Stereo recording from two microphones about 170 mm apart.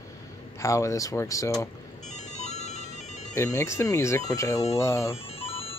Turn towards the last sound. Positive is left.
turn(degrees=35)  # may be behind; listen again after turning